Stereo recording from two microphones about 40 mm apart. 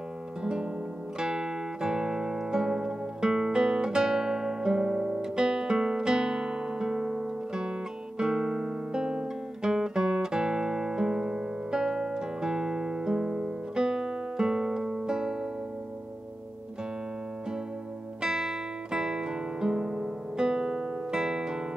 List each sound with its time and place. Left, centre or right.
0.4 s music: right
8.2 s guitar: centre
18.2 s music: centre